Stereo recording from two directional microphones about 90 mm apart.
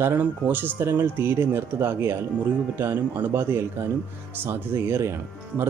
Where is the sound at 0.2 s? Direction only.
20° right (ahead or behind).